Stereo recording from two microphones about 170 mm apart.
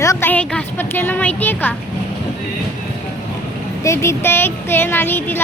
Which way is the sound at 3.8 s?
15° left (ahead or behind).